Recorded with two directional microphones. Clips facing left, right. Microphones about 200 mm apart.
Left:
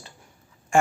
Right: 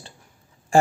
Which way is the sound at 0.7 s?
35° right (ahead or behind).